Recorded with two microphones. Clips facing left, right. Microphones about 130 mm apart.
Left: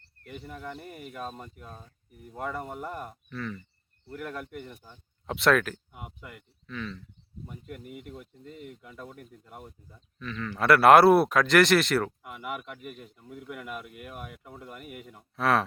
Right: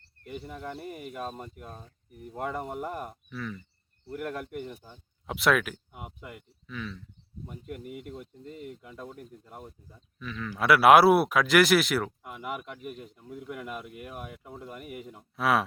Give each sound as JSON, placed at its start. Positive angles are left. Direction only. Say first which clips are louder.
{"t": 0.8, "sound": "speech", "louder": "right 2 dB", "side_deg": -5}
{"t": 8.4, "sound": "speech", "louder": "right 2 dB", "side_deg": -40}
{"t": 9.0, "sound": "speech", "louder": "right 2 dB", "side_deg": 0}